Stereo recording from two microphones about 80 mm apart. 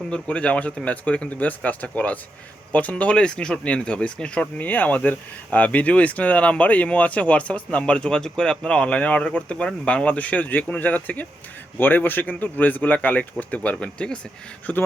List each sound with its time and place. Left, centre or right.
0.1 s speech: centre